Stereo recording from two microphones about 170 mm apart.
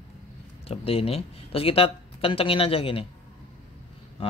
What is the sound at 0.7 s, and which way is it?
Speech, 35° left (ahead or behind).